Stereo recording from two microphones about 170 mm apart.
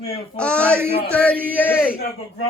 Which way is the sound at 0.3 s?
5° left (ahead or behind).